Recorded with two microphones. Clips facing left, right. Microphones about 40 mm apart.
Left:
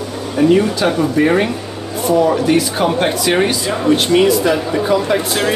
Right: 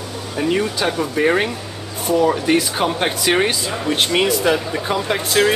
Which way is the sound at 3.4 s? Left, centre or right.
Right.